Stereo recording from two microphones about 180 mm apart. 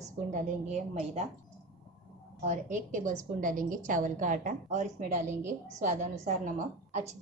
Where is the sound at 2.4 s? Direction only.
40° right (ahead or behind).